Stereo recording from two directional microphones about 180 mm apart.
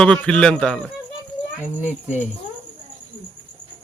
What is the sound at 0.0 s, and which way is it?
Speech, 5° left (ahead or behind).